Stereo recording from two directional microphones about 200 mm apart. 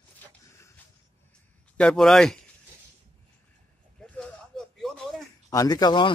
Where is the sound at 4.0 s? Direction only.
5° left (ahead or behind).